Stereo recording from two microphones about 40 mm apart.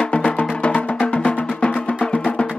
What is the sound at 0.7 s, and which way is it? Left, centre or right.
Music, left.